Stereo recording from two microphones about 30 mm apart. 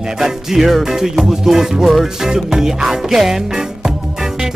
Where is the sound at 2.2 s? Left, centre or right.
Centre.